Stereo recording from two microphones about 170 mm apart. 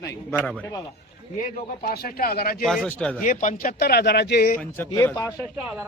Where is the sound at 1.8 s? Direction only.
60° left (ahead or behind).